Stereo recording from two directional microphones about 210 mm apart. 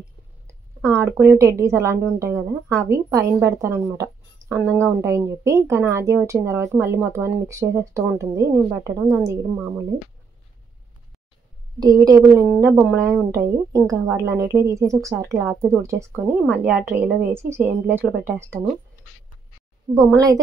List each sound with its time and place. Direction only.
0.5 s a woman's voice: 15° right (ahead or behind)
11.8 s a woman's voice: 20° right (ahead or behind)
19.9 s a woman's voice: 15° right (ahead or behind)